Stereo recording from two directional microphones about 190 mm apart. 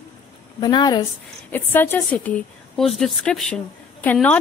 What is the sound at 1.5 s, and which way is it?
Speech, 10° left (ahead or behind).